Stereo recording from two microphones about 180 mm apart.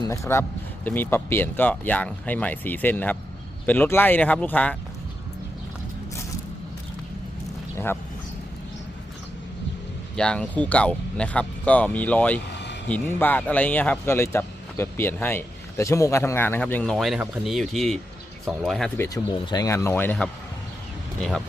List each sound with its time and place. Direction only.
0.0 s speech: 15° left (ahead or behind)
10.2 s speech: 5° left (ahead or behind)
12.5 s vehicle: 75° left (ahead or behind)
12.9 s speech: 10° left (ahead or behind)
18.9 s speech: 20° left (ahead or behind)